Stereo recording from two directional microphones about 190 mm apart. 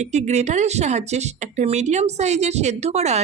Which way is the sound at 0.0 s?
35° right (ahead or behind).